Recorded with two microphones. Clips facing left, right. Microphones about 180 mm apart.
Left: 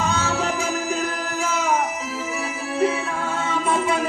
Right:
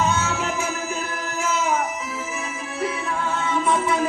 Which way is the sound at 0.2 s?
35° left (ahead or behind).